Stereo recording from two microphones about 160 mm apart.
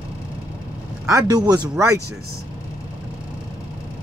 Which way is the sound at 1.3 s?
25° right (ahead or behind).